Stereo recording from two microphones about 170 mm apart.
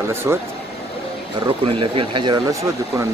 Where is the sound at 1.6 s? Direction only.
30° right (ahead or behind).